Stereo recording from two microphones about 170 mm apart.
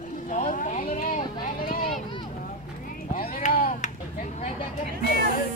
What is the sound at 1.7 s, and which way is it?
Vehicle, 50° left (ahead or behind).